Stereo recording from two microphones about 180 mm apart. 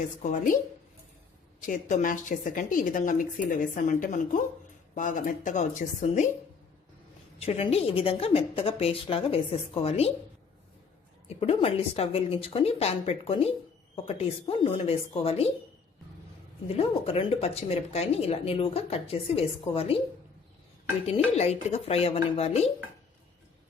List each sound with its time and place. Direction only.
0.2 s a woman's voice: 40° left (ahead or behind)
1.6 s a woman's voice: 45° left (ahead or behind)
7.3 s speech: 35° left (ahead or behind)
11.3 s speech: 35° left (ahead or behind)
16.6 s speech: 35° left (ahead or behind)
21.3 s speech: 35° left (ahead or behind)